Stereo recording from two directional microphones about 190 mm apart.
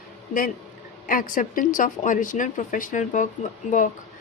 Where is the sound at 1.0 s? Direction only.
45° left (ahead or behind).